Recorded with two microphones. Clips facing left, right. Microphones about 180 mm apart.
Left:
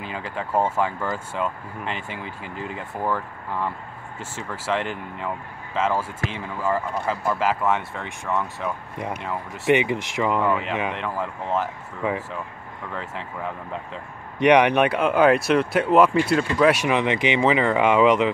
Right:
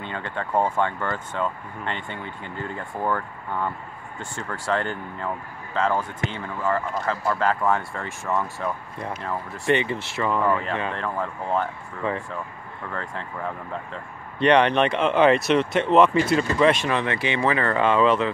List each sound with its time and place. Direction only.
0.1 s speech: 5° left (ahead or behind)
2.0 s speech: 90° left
2.6 s speech: 5° left (ahead or behind)
9.2 s speech: 15° left (ahead or behind)
14.4 s speech: 15° left (ahead or behind)